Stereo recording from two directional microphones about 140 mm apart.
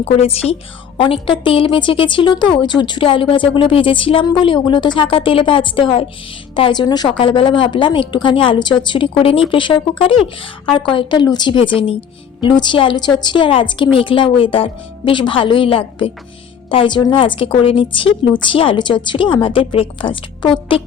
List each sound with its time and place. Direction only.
0.0 s a woman's voice: 45° left (ahead or behind)